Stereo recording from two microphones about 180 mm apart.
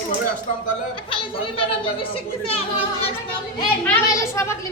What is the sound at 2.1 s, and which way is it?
Speech, 35° left (ahead or behind).